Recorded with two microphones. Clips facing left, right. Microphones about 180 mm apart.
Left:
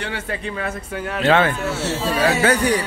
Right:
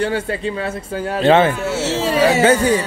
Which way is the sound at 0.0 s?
35° right (ahead or behind).